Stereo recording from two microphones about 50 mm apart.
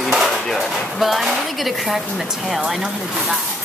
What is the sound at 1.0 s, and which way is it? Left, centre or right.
Speech, centre.